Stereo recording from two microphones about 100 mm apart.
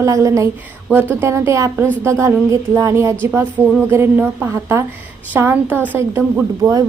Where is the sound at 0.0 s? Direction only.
30° right (ahead or behind).